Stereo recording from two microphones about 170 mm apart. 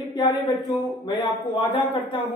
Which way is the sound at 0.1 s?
25° left (ahead or behind).